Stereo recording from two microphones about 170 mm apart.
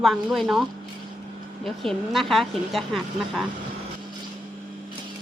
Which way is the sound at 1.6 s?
Centre (ahead or behind).